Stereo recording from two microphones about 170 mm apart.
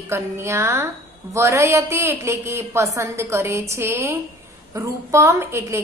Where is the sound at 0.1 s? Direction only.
15° right (ahead or behind).